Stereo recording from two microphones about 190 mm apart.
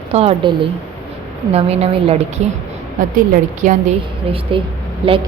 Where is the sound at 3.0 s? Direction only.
45° right (ahead or behind).